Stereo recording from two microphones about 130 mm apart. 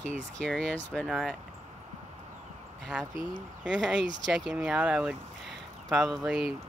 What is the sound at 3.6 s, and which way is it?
Speech, 10° right (ahead or behind).